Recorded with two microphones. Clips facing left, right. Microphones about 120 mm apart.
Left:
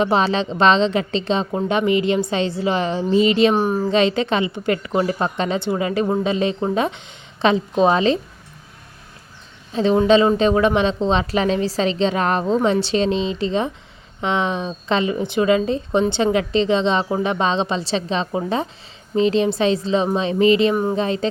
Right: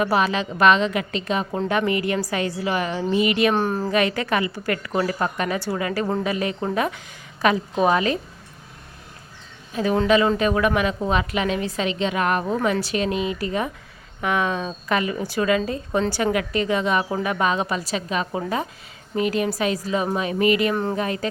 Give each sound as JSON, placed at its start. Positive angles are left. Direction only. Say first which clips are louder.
{"t": 0.0, "sound": "a woman's voice", "louder": "left 3 dB", "side_deg": 25}
{"t": 1.5, "sound": "a woman's voice", "louder": "left 3 dB", "side_deg": 15}
{"t": 3.5, "sound": "a woman's voice", "louder": "left 3 dB", "side_deg": 10}
{"t": 3.9, "sound": "a woman's voice", "louder": "left 3 dB", "side_deg": 25}
{"t": 9.7, "sound": "a woman's voice", "louder": "left 4 dB", "side_deg": 25}